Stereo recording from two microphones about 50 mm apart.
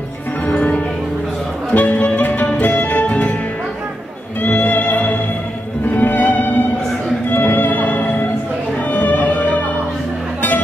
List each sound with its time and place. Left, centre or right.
0.5 s music: left
4.4 s music: left